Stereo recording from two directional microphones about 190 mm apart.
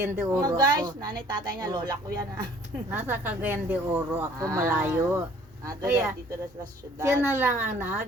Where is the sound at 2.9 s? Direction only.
10° right (ahead or behind).